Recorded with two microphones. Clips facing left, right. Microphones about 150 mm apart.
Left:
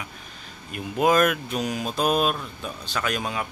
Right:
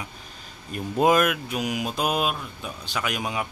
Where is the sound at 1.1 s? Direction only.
10° right (ahead or behind).